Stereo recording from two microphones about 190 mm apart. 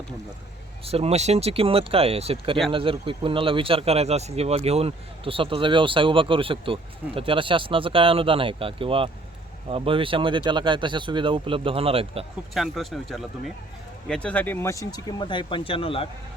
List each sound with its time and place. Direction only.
0.9 s speech: 30° right (ahead or behind)
12.5 s speech: centre (ahead or behind); by 16.0 s 30° left (ahead or behind)